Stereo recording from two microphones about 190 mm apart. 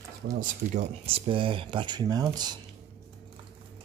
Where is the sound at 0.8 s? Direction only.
30° right (ahead or behind).